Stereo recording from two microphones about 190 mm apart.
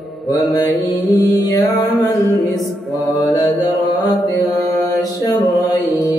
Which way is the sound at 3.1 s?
20° left (ahead or behind).